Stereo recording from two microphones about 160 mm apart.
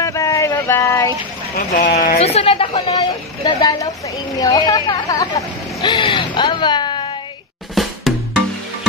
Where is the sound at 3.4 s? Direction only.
25° left (ahead or behind).